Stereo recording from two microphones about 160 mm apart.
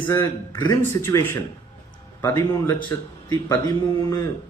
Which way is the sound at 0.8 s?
15° left (ahead or behind).